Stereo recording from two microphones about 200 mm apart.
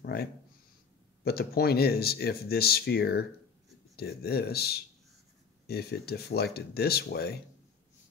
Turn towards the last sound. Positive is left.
turn(degrees=55)  # may be behind; listen again after turning